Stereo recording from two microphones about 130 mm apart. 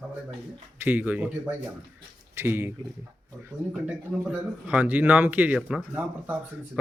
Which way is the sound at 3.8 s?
10° right (ahead or behind).